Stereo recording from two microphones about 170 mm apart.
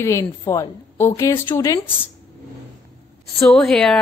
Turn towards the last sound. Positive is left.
turn(degrees=5)  # may be behind; listen again after turning